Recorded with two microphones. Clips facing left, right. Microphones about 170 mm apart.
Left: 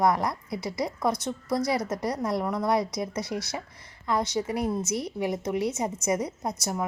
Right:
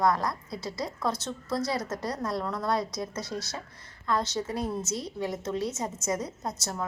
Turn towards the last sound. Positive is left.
turn(degrees=20)  # may be behind; listen again after turning